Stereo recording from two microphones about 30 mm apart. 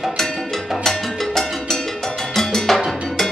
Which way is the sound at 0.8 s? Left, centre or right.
Centre.